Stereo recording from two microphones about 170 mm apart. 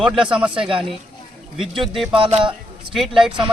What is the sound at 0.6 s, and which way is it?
Speech, 30° right (ahead or behind).